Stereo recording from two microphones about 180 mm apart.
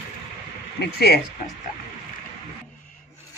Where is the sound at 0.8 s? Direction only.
60° left (ahead or behind).